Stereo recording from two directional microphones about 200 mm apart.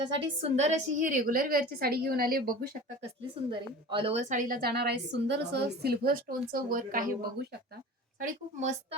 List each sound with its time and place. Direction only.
0.0 s a woman's voice: 30° right (ahead or behind); by 2.6 s 45° right (ahead or behind)
3.5 s a woman's voice: 25° right (ahead or behind)
4.3 s a woman's voice: 45° right (ahead or behind)